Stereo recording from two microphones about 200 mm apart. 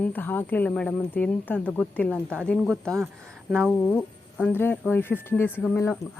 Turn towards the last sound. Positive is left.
turn(degrees=10)  # may be behind; listen again after turning